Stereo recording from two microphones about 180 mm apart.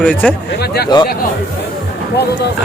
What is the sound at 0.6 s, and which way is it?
Speech, 65° left (ahead or behind).